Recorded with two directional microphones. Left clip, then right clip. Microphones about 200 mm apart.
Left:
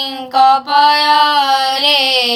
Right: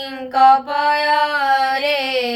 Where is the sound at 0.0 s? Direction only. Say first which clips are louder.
Left 2 dB; 20° left (ahead or behind).